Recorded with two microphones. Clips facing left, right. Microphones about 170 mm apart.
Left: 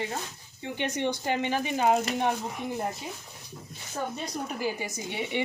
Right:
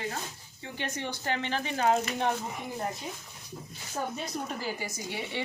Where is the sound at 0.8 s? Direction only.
20° left (ahead or behind).